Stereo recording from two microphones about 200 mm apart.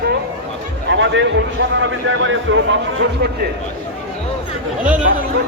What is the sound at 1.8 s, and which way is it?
Speech, 70° right (ahead or behind).